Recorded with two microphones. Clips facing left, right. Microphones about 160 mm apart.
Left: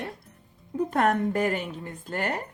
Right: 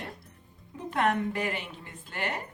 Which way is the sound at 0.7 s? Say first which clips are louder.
Left 4 dB; 45° left (ahead or behind).